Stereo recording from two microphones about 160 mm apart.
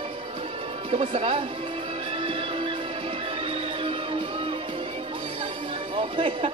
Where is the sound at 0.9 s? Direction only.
35° right (ahead or behind).